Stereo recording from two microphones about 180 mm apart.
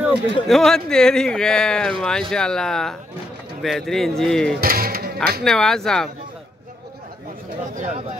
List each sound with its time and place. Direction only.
0.0 s speech: centre (ahead or behind)
4.6 s speech: 55° right (ahead or behind)
5.4 s speech: 5° left (ahead or behind)
7.7 s speech: 40° right (ahead or behind)